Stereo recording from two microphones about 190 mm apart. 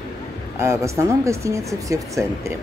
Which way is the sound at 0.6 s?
15° right (ahead or behind).